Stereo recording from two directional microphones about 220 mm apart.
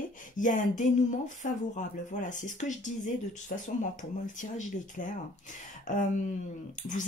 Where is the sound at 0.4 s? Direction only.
35° left (ahead or behind).